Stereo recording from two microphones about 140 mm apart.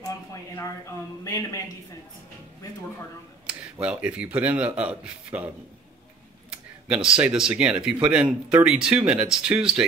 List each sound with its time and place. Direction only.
0.0 s a sound: 20° left (ahead or behind)
1.2 s speech: 20° left (ahead or behind)
3.4 s speech: 10° right (ahead or behind)
6.9 s speech: 5° right (ahead or behind)